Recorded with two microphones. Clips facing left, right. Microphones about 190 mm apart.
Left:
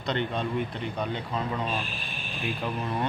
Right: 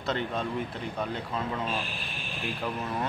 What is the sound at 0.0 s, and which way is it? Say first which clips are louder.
Speech: left 1 dB; 5° right (ahead or behind).